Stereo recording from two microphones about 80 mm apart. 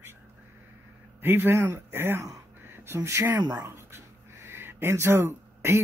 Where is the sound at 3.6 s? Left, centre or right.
Right.